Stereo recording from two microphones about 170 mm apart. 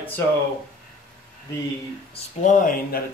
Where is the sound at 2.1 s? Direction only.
50° left (ahead or behind).